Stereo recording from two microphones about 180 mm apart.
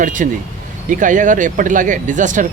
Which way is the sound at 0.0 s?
45° right (ahead or behind).